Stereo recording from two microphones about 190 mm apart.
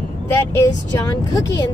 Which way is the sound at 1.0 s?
20° left (ahead or behind).